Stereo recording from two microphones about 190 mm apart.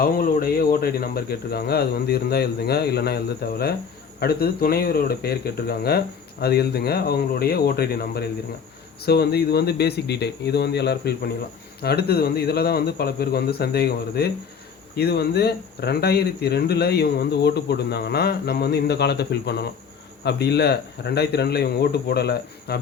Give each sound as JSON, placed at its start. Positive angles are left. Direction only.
{"t": 0.0, "sound": "speech", "side_deg": 50}